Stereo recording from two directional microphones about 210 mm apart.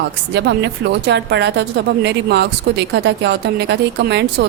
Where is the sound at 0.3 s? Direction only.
55° right (ahead or behind).